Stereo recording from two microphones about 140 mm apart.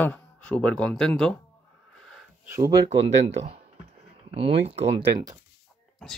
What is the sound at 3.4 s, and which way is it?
Speech, 45° right (ahead or behind).